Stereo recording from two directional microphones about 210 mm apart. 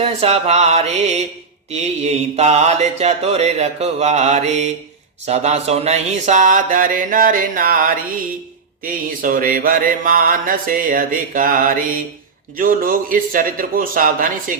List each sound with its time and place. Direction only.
0.0 s mantra: 30° right (ahead or behind)
12.5 s speech: 40° right (ahead or behind)